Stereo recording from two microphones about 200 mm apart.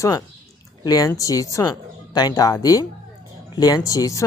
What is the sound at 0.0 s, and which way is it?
Speech, 15° left (ahead or behind).